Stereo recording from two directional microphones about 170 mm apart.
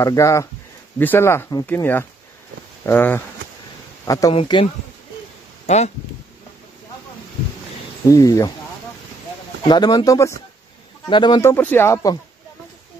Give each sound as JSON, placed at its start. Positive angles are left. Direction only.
{"t": 0.0, "sound": "speech", "side_deg": 20}
{"t": 4.3, "sound": "speech", "side_deg": 30}
{"t": 8.1, "sound": "speech", "side_deg": 20}
{"t": 9.6, "sound": "speech", "side_deg": 25}
{"t": 11.5, "sound": "speech", "side_deg": 10}